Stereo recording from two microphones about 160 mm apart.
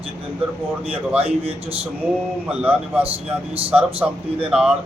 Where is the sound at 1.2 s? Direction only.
35° right (ahead or behind).